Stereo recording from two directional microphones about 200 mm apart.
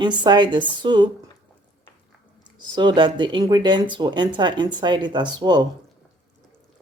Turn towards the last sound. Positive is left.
turn(degrees=-20)  # may be behind; listen again after turning